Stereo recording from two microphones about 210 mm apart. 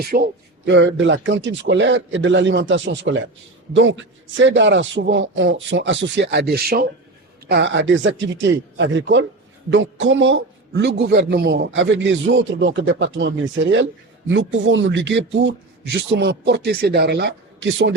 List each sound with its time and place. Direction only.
0.1 s speech: 40° right (ahead or behind)
0.6 s a man's voice: 60° right (ahead or behind)